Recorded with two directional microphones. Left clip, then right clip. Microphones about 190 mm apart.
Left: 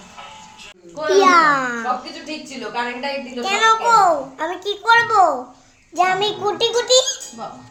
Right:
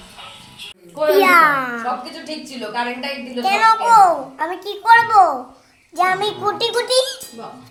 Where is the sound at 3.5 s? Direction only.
45° left (ahead or behind).